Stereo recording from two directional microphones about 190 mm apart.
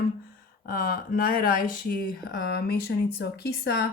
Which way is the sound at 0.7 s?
50° left (ahead or behind).